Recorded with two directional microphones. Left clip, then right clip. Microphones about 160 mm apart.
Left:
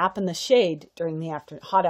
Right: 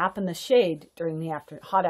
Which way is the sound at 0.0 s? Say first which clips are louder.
Left 3 dB; 60° left (ahead or behind).